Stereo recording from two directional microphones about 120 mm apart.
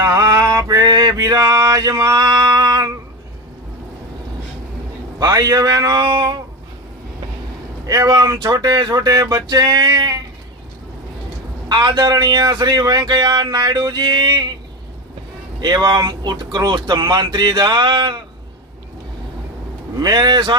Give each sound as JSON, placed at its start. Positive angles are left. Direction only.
{"t": 0.0, "sound": "male singing", "side_deg": -30}
{"t": 0.9, "sound": "speech", "side_deg": -40}
{"t": 5.2, "sound": "speech", "side_deg": -30}
{"t": 7.9, "sound": "speech", "side_deg": -35}
{"t": 11.7, "sound": "speech", "side_deg": -35}
{"t": 15.6, "sound": "speech", "side_deg": -35}
{"t": 20.0, "sound": "speech", "side_deg": -40}